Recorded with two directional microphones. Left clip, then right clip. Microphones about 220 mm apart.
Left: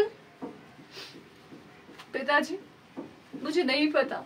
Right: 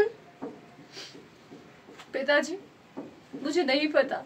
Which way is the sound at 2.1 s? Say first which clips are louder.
Right 1 dB; centre (ahead or behind).